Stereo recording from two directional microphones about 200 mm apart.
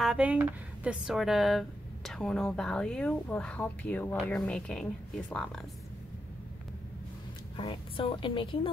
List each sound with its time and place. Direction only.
0.0 s speech: 5° right (ahead or behind)
7.5 s a woman's voice: 25° left (ahead or behind)